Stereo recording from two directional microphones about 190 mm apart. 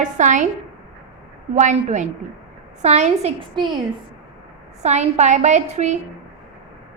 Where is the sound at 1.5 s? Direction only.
40° right (ahead or behind).